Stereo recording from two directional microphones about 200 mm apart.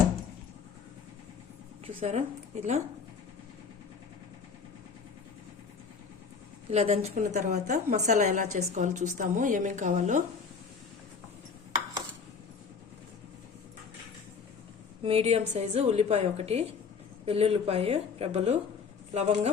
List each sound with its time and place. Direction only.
1.9 s a woman's voice: 30° right (ahead or behind)
6.7 s a woman's voice: 30° right (ahead or behind)
15.0 s a woman's voice: 30° right (ahead or behind)